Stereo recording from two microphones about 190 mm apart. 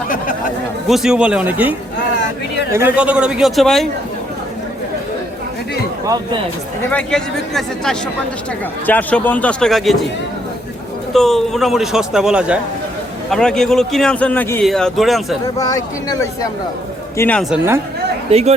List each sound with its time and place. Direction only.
0.9 s a man's voice: centre (ahead or behind)
2.7 s a man's voice: 10° right (ahead or behind)
6.9 s a man's voice: 5° left (ahead or behind)
11.1 s a man's voice: centre (ahead or behind)
15.5 s speech: 20° left (ahead or behind)
18.3 s speech: 35° right (ahead or behind)